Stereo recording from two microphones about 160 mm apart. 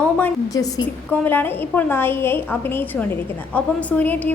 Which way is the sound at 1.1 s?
10° left (ahead or behind).